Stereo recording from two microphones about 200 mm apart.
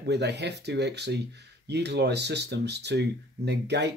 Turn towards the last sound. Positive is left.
turn(degrees=-55)  # may be behind; listen again after turning